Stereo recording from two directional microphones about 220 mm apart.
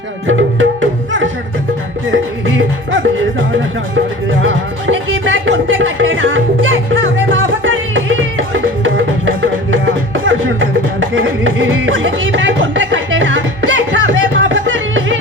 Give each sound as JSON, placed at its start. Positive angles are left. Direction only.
{"t": 0.3, "sound": "music", "side_deg": -60}
{"t": 4.4, "sound": "music", "side_deg": -65}
{"t": 11.1, "sound": "music", "side_deg": -60}